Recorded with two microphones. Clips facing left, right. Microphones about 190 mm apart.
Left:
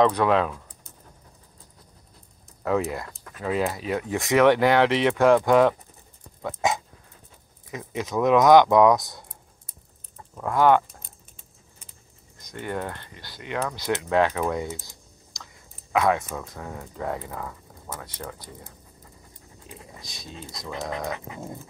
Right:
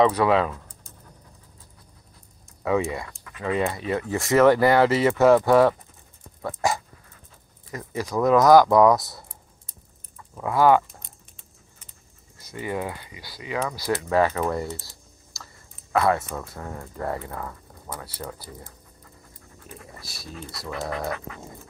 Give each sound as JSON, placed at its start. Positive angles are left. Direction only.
{"t": 0.0, "sound": "speech", "side_deg": 0}
{"t": 2.6, "sound": "speech", "side_deg": 0}
{"t": 10.3, "sound": "speech", "side_deg": -5}
{"t": 12.4, "sound": "speech", "side_deg": -5}
{"t": 18.0, "sound": "speech", "side_deg": -5}
{"t": 20.2, "sound": "speech", "side_deg": 25}